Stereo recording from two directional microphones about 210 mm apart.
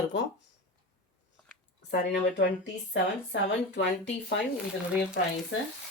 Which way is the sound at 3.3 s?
55° left (ahead or behind).